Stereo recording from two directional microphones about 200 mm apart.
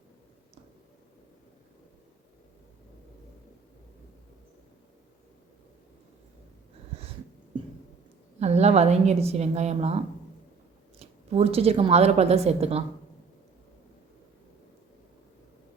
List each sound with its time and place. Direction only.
8.4 s a woman's voice: 35° right (ahead or behind)
11.0 s a woman's voice: 30° right (ahead or behind)